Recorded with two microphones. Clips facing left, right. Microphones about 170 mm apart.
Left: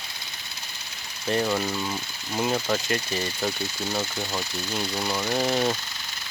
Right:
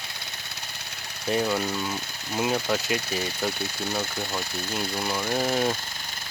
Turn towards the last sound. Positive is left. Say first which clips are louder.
# left 1 dB
turn(degrees=-5)  # may be behind; listen again after turning